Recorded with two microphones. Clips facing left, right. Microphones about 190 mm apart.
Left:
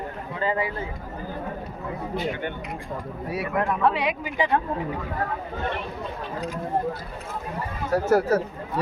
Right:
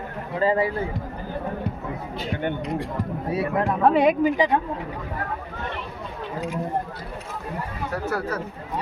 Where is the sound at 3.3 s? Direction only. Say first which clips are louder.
Right 2 dB; 30° right (ahead or behind).